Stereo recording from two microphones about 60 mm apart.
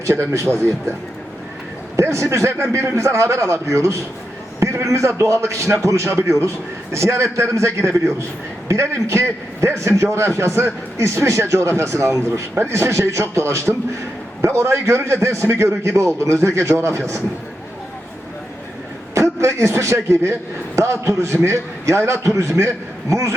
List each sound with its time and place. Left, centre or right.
0.0 s a man's voice: right
2.0 s a man's voice: right
19.1 s a man's voice: right